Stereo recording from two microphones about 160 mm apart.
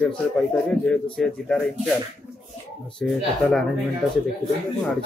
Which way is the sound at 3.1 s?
Centre (ahead or behind).